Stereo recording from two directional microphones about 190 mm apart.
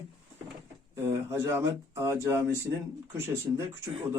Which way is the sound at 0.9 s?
15° right (ahead or behind).